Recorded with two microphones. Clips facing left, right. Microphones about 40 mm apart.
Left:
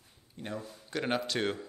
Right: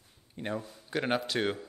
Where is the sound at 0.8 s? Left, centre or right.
Centre.